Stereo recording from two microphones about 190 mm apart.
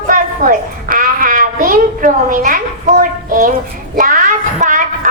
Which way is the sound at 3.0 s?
50° right (ahead or behind).